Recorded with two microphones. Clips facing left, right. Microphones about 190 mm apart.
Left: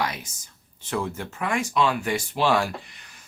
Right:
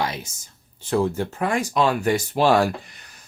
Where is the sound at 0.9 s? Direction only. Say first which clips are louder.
Right 7 dB; 35° right (ahead or behind).